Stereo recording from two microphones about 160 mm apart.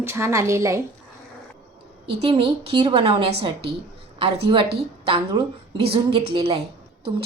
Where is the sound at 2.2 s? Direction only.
35° right (ahead or behind).